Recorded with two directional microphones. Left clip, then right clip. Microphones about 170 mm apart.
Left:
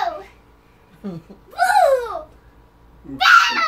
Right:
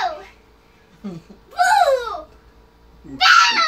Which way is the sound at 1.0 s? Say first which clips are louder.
Left 2 dB; 45° left (ahead or behind).